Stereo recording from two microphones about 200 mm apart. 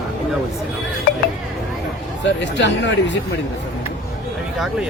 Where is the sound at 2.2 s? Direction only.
60° left (ahead or behind).